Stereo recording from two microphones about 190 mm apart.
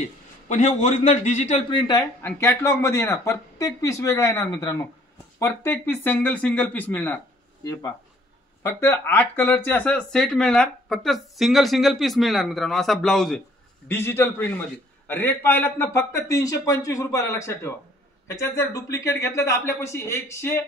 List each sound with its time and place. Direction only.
0.5 s a man's voice: 40° left (ahead or behind)
1.7 s speech: 25° left (ahead or behind)
8.6 s speech: 15° left (ahead or behind)